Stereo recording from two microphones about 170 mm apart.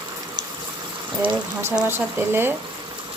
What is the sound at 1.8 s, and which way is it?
Speech, 15° right (ahead or behind).